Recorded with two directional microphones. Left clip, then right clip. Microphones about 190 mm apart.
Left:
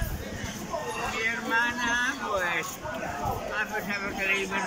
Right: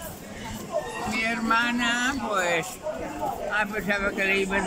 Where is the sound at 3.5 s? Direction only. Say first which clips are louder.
Right 4 dB; 60° right (ahead or behind).